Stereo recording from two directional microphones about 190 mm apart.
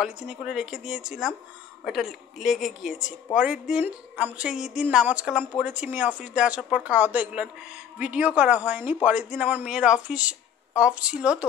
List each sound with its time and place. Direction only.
0.0 s speech: 5° right (ahead or behind)